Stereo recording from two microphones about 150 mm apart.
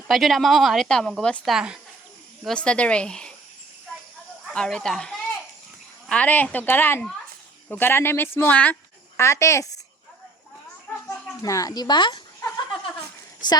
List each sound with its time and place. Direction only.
0.1 s speech: centre (ahead or behind)
4.5 s a woman's voice: 5° left (ahead or behind); by 9.7 s 20° left (ahead or behind)
10.9 s a sound: 10° left (ahead or behind)
11.4 s a woman's voice: 25° left (ahead or behind)
13.4 s a woman's voice: 30° left (ahead or behind)